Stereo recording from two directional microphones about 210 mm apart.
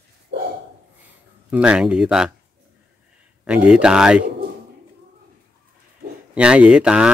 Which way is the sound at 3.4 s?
5° right (ahead or behind).